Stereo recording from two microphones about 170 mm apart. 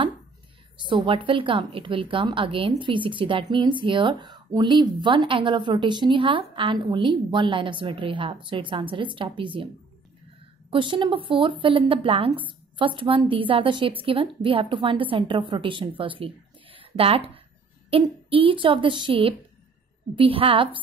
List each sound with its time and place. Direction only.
0.8 s speech: 30° right (ahead or behind)
10.7 s a woman's voice: 30° right (ahead or behind)